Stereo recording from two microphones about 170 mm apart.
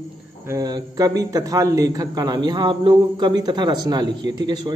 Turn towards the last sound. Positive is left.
turn(degrees=-25)  # may be behind; listen again after turning